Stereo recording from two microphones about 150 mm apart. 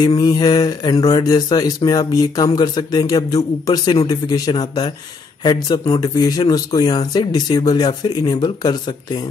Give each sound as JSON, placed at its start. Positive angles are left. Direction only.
{"t": 0.0, "sound": "mantra", "side_deg": 30}